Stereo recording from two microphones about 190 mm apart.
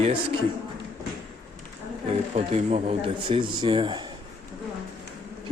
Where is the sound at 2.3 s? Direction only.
35° right (ahead or behind).